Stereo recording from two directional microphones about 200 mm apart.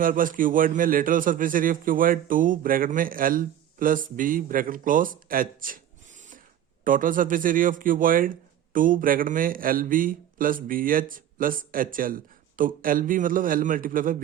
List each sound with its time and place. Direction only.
0.0 s a man's voice: 45° right (ahead or behind)